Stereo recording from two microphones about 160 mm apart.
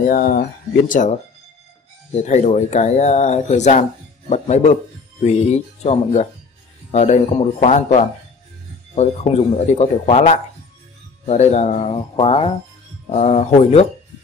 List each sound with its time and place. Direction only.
0.1 s speech: 60° left (ahead or behind); by 13.8 s 40° left (ahead or behind)